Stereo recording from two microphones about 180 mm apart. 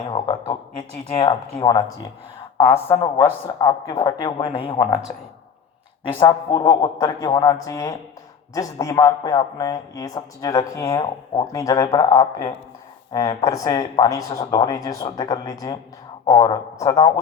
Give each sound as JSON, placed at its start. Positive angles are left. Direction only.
{"t": 0.1, "sound": "a sound", "side_deg": 30}
{"t": 1.1, "sound": "speech", "side_deg": 30}
{"t": 2.6, "sound": "speech", "side_deg": 15}
{"t": 6.1, "sound": "speech", "side_deg": 25}
{"t": 11.9, "sound": "speech", "side_deg": 30}